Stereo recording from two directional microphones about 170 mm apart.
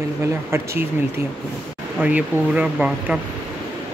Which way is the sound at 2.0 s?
10° right (ahead or behind).